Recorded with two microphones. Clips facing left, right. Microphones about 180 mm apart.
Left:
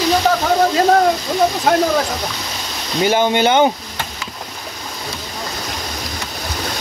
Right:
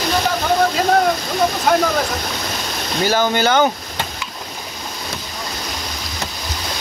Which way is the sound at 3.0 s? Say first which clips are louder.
Left 3 dB; 20° left (ahead or behind).